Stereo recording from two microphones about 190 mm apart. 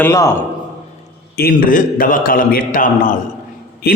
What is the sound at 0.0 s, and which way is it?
Speech, 15° left (ahead or behind).